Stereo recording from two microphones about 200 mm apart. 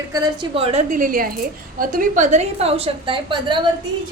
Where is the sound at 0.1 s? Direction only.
30° right (ahead or behind).